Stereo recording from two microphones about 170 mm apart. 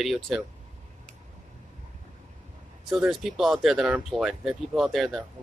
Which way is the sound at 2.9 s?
5° right (ahead or behind).